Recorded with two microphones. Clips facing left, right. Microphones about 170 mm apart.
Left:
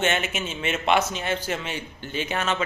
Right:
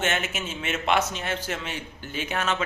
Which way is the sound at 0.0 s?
Centre (ahead or behind).